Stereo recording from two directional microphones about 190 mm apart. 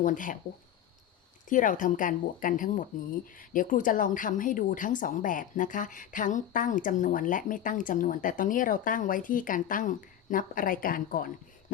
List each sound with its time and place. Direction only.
0.0 s a woman's voice: 45° left (ahead or behind)
1.5 s a woman's voice: 45° left (ahead or behind)